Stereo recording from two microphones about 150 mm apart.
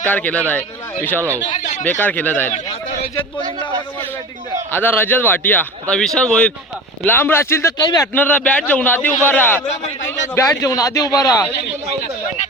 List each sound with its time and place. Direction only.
0.0 s a man's voice: 10° left (ahead or behind)
2.0 s a man's voice: 10° left (ahead or behind)
4.7 s a man's voice: 15° left (ahead or behind)